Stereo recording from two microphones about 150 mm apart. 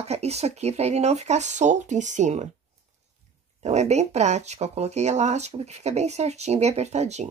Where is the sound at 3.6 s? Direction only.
50° right (ahead or behind).